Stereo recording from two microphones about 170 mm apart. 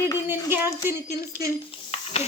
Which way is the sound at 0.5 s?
15° right (ahead or behind).